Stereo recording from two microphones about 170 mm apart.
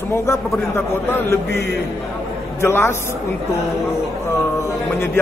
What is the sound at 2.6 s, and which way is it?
Speech, 15° left (ahead or behind).